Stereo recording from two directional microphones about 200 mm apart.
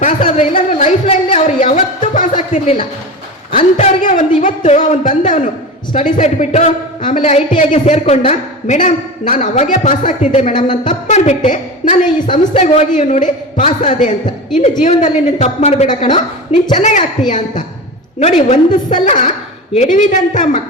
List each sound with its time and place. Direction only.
0.0 s a woman's voice: 40° left (ahead or behind)
15.9 s a woman's voice: 25° left (ahead or behind)
16.7 s a woman's voice: 40° left (ahead or behind)